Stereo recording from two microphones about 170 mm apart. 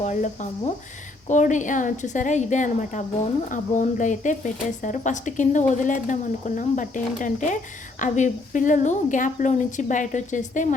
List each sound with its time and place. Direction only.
0.0 s speech: 45° left (ahead or behind)